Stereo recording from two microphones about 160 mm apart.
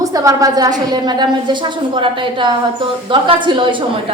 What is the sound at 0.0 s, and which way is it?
A woman's voice, 20° right (ahead or behind).